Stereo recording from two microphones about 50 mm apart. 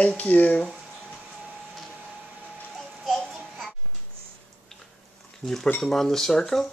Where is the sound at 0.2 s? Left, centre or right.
Left.